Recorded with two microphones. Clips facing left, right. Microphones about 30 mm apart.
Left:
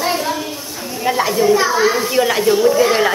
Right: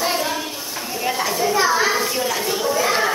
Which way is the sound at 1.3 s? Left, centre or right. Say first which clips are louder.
Left 3 dB; centre.